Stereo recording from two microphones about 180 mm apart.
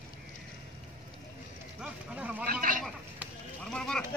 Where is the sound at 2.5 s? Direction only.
50° right (ahead or behind).